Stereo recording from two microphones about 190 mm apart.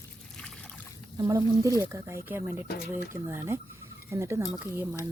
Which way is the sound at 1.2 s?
20° right (ahead or behind).